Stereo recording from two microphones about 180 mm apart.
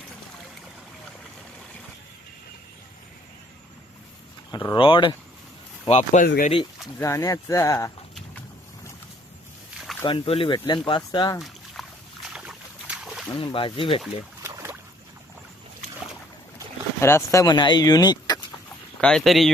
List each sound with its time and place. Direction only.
4.5 s speech: 25° left (ahead or behind)
5.9 s speech: 40° left (ahead or behind)
6.2 s speech: 55° left (ahead or behind)
7.0 s speech: 15° left (ahead or behind)
10.0 s speech: 30° left (ahead or behind)
11.3 s boat: centre (ahead or behind)
13.3 s speech: 30° left (ahead or behind)
14.4 s boat: 15° right (ahead or behind)
17.0 s speech: 15° left (ahead or behind)
18.9 s speech: 5° left (ahead or behind)